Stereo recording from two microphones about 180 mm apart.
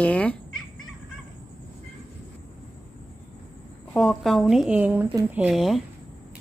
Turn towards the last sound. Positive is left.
turn(degrees=0)  # may be behind; listen again after turning